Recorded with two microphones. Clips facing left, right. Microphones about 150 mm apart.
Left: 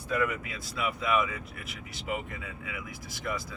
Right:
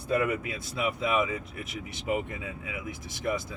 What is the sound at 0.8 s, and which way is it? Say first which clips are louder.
Speech: right 1 dB; 25° right (ahead or behind).